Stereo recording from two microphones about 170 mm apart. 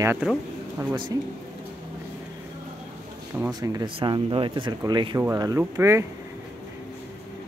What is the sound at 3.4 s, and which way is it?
Speech, 20° right (ahead or behind).